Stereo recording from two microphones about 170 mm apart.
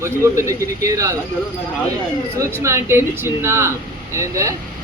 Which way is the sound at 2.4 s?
15° right (ahead or behind).